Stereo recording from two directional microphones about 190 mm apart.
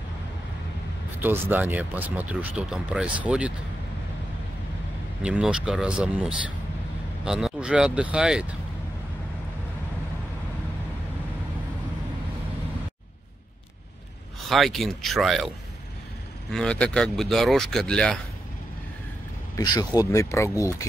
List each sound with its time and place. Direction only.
1.2 s speech: 10° right (ahead or behind)
5.2 s speech: 5° right (ahead or behind)
14.5 s speech: centre (ahead or behind)
16.5 s speech: 5° left (ahead or behind)
19.5 s speech: 20° left (ahead or behind)